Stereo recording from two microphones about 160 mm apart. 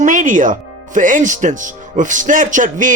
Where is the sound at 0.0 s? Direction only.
55° right (ahead or behind).